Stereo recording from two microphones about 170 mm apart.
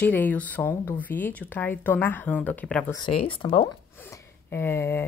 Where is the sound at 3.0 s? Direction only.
35° left (ahead or behind).